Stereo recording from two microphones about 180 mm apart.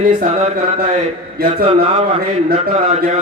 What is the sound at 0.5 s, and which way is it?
Speech, 50° right (ahead or behind).